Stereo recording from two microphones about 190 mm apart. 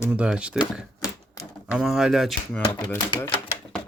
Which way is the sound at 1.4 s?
15° left (ahead or behind).